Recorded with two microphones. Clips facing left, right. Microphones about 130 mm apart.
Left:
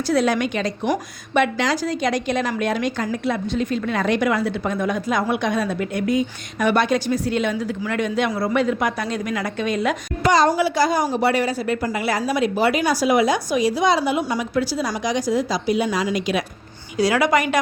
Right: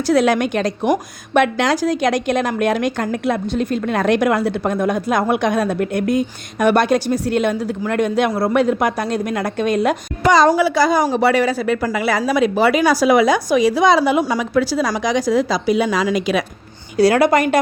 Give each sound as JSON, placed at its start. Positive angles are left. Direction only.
{"t": 0.1, "sound": "a woman's voice", "side_deg": -70}
{"t": 4.6, "sound": "a woman's voice", "side_deg": -50}
{"t": 5.5, "sound": "a woman's voice", "side_deg": -55}
{"t": 10.3, "sound": "a woman's voice", "side_deg": -90}
{"t": 17.0, "sound": "a woman's voice", "side_deg": -55}